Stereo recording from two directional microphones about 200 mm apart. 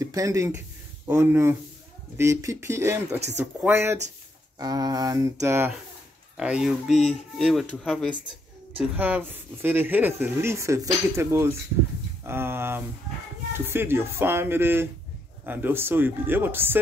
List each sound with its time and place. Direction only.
0.0 s speech: 15° right (ahead or behind)